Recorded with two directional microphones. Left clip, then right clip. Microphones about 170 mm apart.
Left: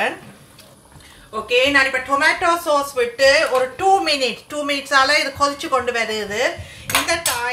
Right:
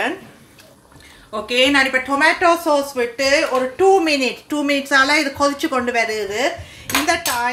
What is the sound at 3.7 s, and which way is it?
Speech, 40° right (ahead or behind).